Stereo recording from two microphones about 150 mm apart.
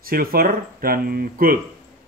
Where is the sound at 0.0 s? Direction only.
75° right (ahead or behind).